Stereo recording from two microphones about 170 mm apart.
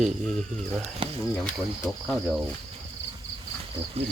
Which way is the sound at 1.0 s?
30° right (ahead or behind).